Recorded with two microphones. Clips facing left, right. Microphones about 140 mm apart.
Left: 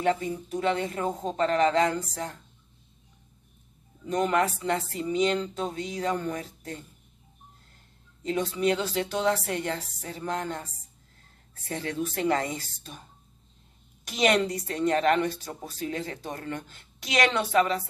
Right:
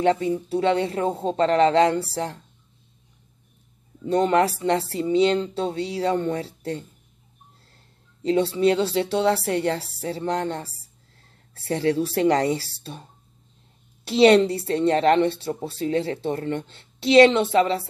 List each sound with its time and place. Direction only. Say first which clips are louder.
0.0 s speech: right 6 dB; 35° right (ahead or behind)
4.0 s speech: right 6 dB; 30° right (ahead or behind)
8.2 s a woman's voice: right 7 dB; 30° right (ahead or behind)